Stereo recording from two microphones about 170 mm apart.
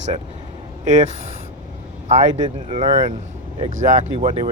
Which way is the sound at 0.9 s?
45° right (ahead or behind).